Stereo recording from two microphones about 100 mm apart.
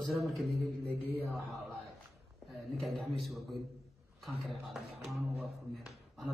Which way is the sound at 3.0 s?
Centre (ahead or behind).